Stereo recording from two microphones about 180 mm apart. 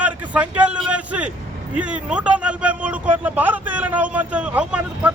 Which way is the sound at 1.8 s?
5° right (ahead or behind).